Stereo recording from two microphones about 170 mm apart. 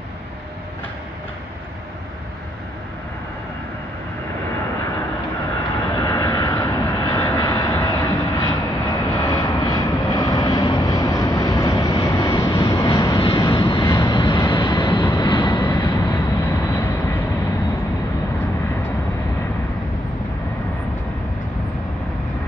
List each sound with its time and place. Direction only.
5.9 s vehicle: 20° left (ahead or behind)
14.7 s vehicle: 25° left (ahead or behind)
15.6 s vehicle: 15° left (ahead or behind)